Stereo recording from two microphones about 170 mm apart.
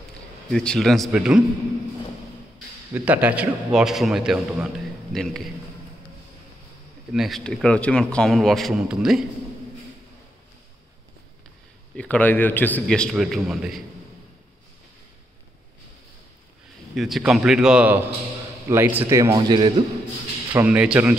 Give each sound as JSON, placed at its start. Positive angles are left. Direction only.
{"t": 0.5, "sound": "a man's voice", "side_deg": 5}
{"t": 2.9, "sound": "a man's voice", "side_deg": -10}
{"t": 7.1, "sound": "a man's voice", "side_deg": 0}
{"t": 12.0, "sound": "a man's voice", "side_deg": 10}
{"t": 16.9, "sound": "a man's voice", "side_deg": 0}
{"t": 20.5, "sound": "a man's voice", "side_deg": -10}